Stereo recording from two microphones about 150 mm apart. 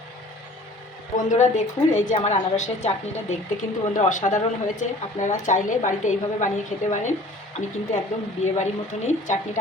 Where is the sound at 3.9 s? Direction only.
55° left (ahead or behind).